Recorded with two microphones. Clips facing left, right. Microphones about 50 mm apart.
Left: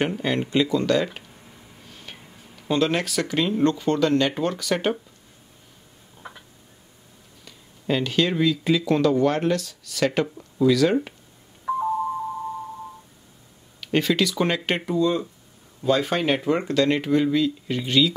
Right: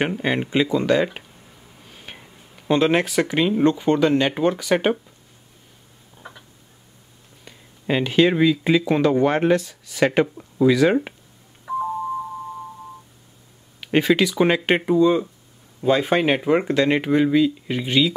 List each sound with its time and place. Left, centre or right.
0.2 s speech: right
1.9 s a sound: centre
2.7 s speech: right
7.4 s speech: right
11.7 s a sound: centre
13.7 s speech: right